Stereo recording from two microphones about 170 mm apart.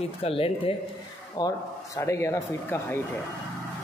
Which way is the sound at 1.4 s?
25° left (ahead or behind).